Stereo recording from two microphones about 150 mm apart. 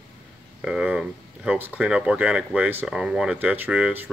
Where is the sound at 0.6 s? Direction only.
5° right (ahead or behind).